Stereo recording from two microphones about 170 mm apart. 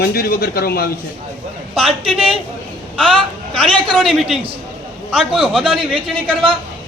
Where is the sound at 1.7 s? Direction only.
35° right (ahead or behind).